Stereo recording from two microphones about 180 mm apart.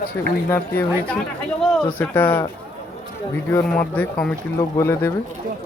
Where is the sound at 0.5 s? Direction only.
10° left (ahead or behind).